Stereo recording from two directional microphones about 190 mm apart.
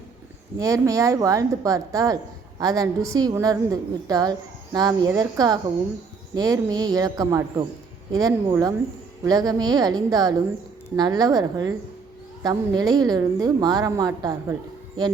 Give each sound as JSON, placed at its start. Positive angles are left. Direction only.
{"t": 0.6, "sound": "a woman's voice", "side_deg": -15}